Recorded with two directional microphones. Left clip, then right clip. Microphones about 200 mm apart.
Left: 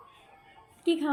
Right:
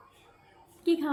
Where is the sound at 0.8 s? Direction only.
10° left (ahead or behind).